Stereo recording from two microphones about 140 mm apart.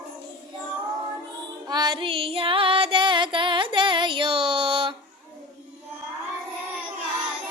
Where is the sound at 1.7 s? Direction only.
30° right (ahead or behind).